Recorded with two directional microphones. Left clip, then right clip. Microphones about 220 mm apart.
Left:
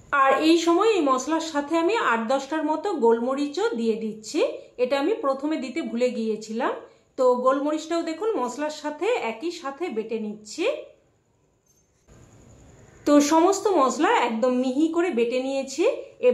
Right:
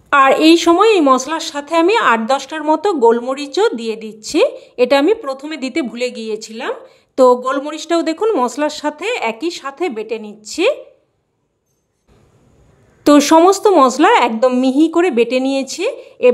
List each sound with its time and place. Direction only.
0.1 s a woman's voice: 50° right (ahead or behind)
13.0 s a woman's voice: 50° right (ahead or behind)